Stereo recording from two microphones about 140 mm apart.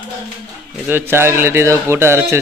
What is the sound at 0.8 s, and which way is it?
A man's voice, 15° right (ahead or behind).